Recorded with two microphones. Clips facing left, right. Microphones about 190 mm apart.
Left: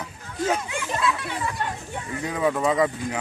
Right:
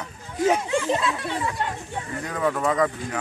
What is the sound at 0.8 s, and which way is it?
Children playing, 30° right (ahead or behind).